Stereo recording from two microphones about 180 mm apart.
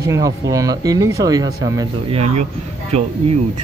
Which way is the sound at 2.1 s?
35° right (ahead or behind).